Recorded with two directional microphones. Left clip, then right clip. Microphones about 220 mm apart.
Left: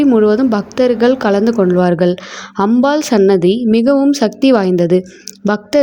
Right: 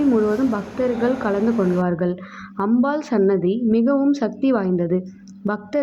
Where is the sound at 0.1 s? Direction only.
45° left (ahead or behind).